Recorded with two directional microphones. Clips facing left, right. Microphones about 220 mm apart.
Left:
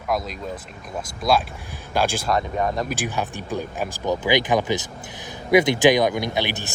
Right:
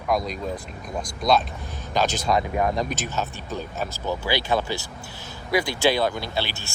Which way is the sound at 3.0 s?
15° left (ahead or behind).